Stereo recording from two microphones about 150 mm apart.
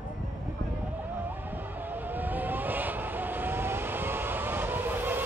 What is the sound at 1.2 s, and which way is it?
Vehicle, 10° right (ahead or behind).